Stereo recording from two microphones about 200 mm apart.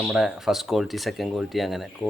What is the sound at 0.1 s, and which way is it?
Speech, centre (ahead or behind).